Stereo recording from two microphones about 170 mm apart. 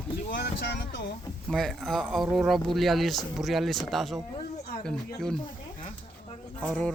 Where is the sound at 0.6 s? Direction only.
80° left.